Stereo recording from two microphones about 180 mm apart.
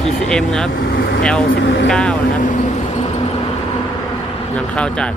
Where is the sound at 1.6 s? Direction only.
90° left.